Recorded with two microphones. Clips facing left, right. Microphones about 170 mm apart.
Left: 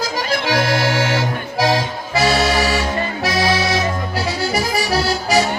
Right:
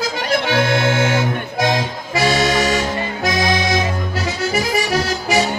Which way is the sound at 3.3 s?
30° left (ahead or behind).